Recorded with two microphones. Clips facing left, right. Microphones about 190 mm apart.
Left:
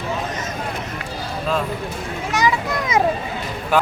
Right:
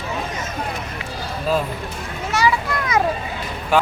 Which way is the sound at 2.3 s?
20° left (ahead or behind).